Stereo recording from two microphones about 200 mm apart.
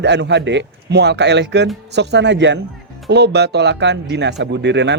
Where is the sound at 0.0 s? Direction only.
60° right (ahead or behind).